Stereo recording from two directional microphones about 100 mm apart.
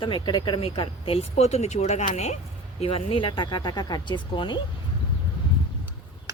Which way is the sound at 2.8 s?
70° left (ahead or behind).